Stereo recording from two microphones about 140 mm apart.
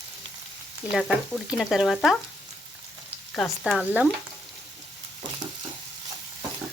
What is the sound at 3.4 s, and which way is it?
Speech, 5° left (ahead or behind).